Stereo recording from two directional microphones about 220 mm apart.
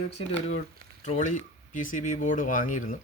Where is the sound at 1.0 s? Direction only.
35° left (ahead or behind).